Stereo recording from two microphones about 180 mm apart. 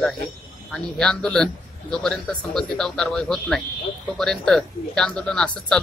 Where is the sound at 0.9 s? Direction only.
5° left (ahead or behind).